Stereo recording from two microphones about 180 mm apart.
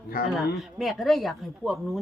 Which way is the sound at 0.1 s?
50° left (ahead or behind).